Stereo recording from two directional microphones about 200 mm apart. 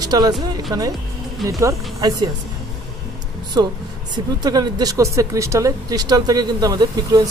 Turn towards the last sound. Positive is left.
turn(degrees=-20)  # may be behind; listen again after turning